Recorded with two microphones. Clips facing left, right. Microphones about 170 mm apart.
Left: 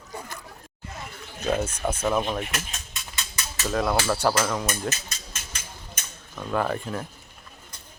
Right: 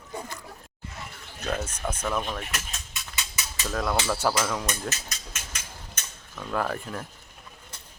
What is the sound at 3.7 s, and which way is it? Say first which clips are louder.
Speech: left 3 dB; 5° left (ahead or behind).